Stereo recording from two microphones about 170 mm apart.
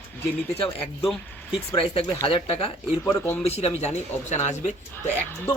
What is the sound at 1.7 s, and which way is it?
Speech, 30° left (ahead or behind).